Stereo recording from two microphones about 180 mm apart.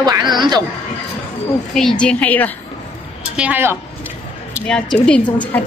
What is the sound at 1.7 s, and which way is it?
Speech, centre (ahead or behind).